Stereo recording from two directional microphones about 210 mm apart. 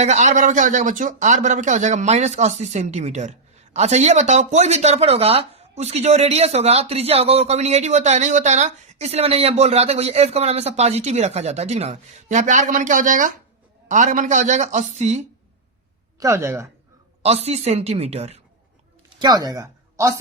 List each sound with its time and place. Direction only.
0.0 s a man's voice: 35° right (ahead or behind)
16.2 s speech: 15° right (ahead or behind)
17.2 s speech: 30° right (ahead or behind)
19.2 s speech: 20° right (ahead or behind)